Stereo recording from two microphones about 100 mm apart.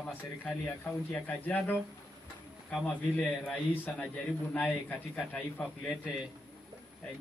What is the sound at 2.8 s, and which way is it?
A man's voice, 10° left (ahead or behind).